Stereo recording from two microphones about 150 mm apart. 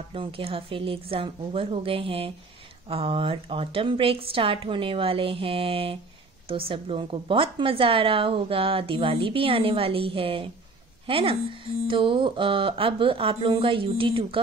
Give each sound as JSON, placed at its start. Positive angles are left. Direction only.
{"t": 0.1, "sound": "a woman's voice", "side_deg": -35}